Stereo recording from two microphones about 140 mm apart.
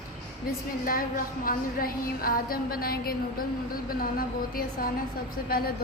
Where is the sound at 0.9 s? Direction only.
90° left.